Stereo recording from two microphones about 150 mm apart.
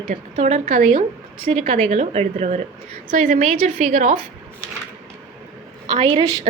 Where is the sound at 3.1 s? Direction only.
60° right (ahead or behind).